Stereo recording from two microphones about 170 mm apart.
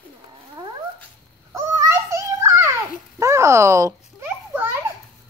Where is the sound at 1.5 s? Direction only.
15° right (ahead or behind).